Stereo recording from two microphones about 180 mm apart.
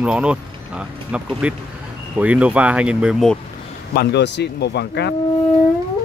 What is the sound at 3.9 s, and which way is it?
Speech, 70° left (ahead or behind).